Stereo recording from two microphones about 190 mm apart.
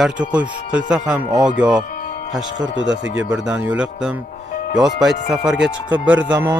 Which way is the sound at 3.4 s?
5° right (ahead or behind).